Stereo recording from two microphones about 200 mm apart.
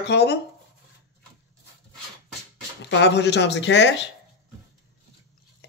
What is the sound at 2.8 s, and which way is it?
A man's voice, 60° left (ahead or behind).